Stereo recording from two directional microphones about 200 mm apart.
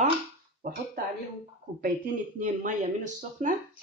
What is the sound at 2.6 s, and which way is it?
Speech, 40° right (ahead or behind).